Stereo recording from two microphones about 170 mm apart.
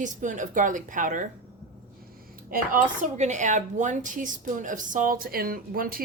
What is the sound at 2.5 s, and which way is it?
Speech, 50° right (ahead or behind).